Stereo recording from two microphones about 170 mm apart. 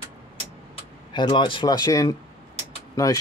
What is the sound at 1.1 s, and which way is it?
Speech, 30° left (ahead or behind).